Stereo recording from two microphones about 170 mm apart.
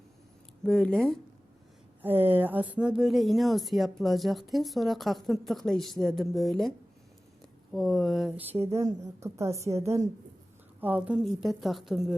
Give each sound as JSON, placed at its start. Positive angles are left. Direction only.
{"t": 0.6, "sound": "a woman's voice", "side_deg": 5}
{"t": 2.0, "sound": "a woman's voice", "side_deg": -10}